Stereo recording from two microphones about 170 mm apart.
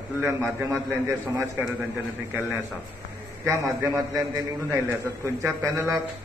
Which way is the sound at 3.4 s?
20° right (ahead or behind).